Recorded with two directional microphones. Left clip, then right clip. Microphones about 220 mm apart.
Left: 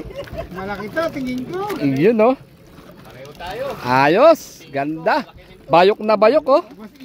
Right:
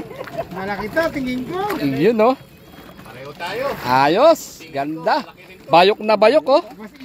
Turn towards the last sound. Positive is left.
turn(degrees=10)  # may be behind; listen again after turning